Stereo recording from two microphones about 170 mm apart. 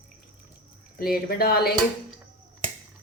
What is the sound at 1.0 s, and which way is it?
Speech, 60° left (ahead or behind).